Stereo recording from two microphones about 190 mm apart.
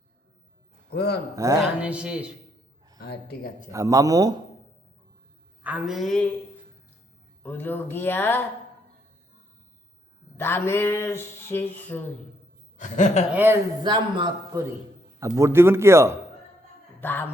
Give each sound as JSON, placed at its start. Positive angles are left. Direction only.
{"t": 0.9, "sound": "a man's voice", "side_deg": 55}
{"t": 1.4, "sound": "a man's voice", "side_deg": -20}
{"t": 1.8, "sound": "a woman's voice", "side_deg": -5}
{"t": 3.0, "sound": "speech", "side_deg": 55}
{"t": 3.7, "sound": "a man's voice", "side_deg": -15}
{"t": 5.6, "sound": "a woman's voice", "side_deg": -5}
{"t": 7.4, "sound": "speech", "side_deg": 10}
{"t": 10.3, "sound": "speech", "side_deg": 15}
{"t": 12.7, "sound": "a woman's voice", "side_deg": 40}
{"t": 13.3, "sound": "a man's voice", "side_deg": -10}
{"t": 13.8, "sound": "a man's voice", "side_deg": -25}
{"t": 17.0, "sound": "speech", "side_deg": 10}